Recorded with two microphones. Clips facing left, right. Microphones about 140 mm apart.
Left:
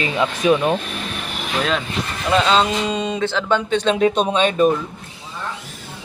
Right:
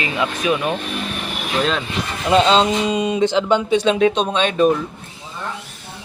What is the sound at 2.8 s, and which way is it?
Speech, 10° right (ahead or behind).